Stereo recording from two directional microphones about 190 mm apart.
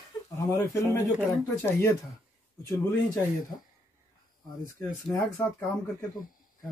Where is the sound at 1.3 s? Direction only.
10° left (ahead or behind).